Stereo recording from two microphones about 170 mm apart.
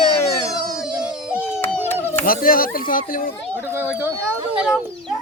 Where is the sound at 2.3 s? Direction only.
60° left (ahead or behind).